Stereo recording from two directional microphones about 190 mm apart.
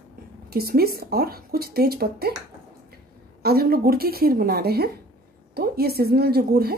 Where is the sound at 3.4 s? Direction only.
50° right (ahead or behind).